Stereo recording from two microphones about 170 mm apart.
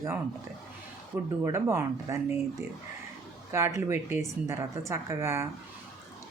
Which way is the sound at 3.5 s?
15° right (ahead or behind).